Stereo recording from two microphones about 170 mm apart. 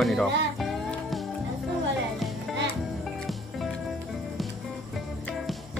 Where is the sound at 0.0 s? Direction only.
Centre (ahead or behind).